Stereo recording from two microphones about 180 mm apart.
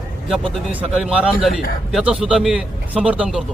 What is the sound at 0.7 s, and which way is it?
A man's voice, 5° right (ahead or behind).